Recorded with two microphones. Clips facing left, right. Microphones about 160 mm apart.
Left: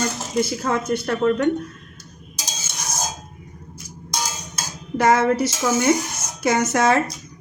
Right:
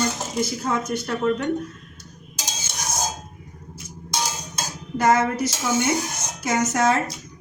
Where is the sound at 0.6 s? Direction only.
60° left (ahead or behind).